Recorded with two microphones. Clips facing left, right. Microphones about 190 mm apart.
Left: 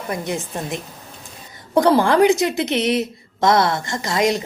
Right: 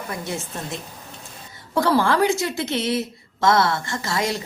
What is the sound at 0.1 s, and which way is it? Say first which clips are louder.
A woman's voice: left 6 dB; 15° left (ahead or behind).